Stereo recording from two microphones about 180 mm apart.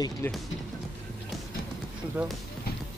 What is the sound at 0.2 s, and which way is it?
Music, 10° left (ahead or behind).